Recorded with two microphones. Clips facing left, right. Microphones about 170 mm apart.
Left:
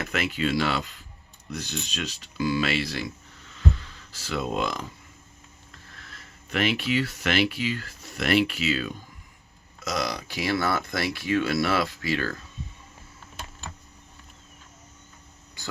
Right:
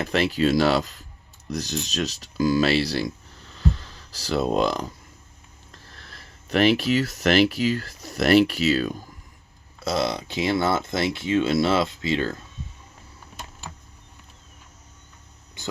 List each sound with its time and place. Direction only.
0.0 s speech: 35° right (ahead or behind)
3.5 s hum: 35° right (ahead or behind)
5.7 s speech: 35° right (ahead or behind)
15.6 s a sound: 20° right (ahead or behind)